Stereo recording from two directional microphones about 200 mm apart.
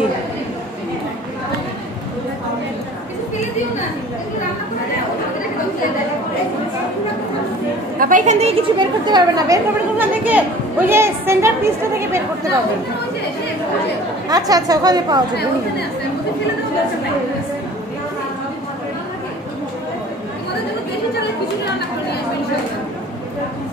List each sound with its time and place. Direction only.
8.0 s speech: 40° right (ahead or behind); by 12.2 s 15° right (ahead or behind)
14.3 s a woman's voice: 20° right (ahead or behind)